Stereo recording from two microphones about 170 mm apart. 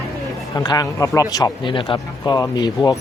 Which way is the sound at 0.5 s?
20° left (ahead or behind).